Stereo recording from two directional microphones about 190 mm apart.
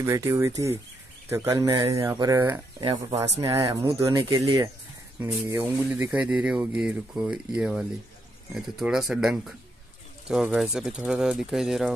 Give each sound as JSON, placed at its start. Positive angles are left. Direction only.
{"t": 0.0, "sound": "speech", "side_deg": -15}